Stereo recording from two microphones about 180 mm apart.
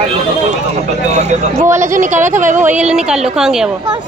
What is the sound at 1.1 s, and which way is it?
Speech, 40° right (ahead or behind).